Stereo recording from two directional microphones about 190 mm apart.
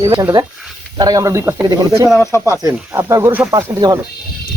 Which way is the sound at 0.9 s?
20° right (ahead or behind).